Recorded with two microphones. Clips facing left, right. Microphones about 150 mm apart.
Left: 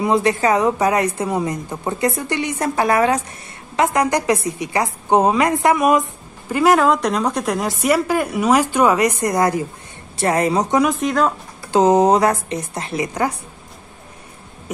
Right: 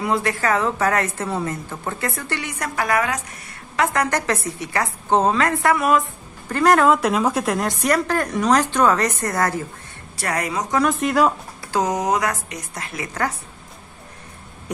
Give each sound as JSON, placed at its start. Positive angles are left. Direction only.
{"t": 0.0, "sound": "a woman's voice", "side_deg": 20}
{"t": 3.7, "sound": "a woman's voice", "side_deg": 20}
{"t": 6.5, "sound": "a woman's voice", "side_deg": 5}
{"t": 10.1, "sound": "a woman's voice", "side_deg": 25}
{"t": 10.9, "sound": "speech", "side_deg": 0}
{"t": 11.7, "sound": "a woman's voice", "side_deg": 25}